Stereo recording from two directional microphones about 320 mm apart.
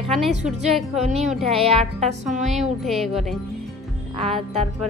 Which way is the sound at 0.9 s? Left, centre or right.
Centre.